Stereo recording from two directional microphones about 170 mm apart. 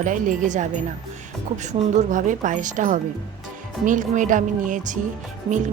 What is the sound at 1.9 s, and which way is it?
Speech, 45° right (ahead or behind).